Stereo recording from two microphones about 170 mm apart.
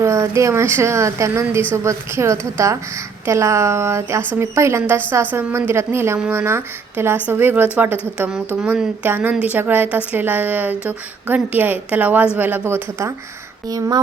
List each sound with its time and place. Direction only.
0.0 s a woman's voice: 15° right (ahead or behind)